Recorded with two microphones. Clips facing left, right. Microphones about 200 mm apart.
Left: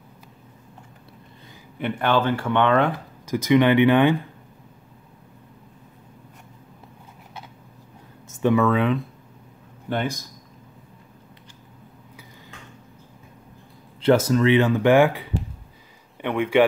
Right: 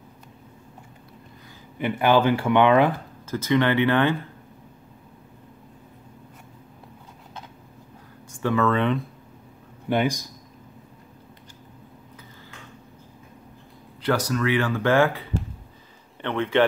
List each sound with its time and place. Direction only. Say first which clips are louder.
1.8 s speech: right 2 dB; 5° right (ahead or behind)
3.3 s speech: left 4 dB; 15° left (ahead or behind)
8.3 s speech: left 3 dB; 20° left (ahead or behind)
9.8 s speech: right 3 dB; 10° right (ahead or behind)
14.0 s a man's voice: left 6 dB; 25° left (ahead or behind)